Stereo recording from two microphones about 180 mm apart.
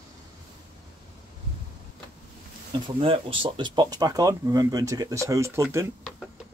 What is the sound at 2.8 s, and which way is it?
Speech, 30° right (ahead or behind).